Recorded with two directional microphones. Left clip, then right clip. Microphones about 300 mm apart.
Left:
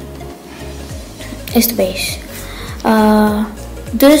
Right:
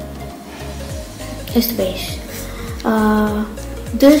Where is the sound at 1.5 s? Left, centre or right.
Centre.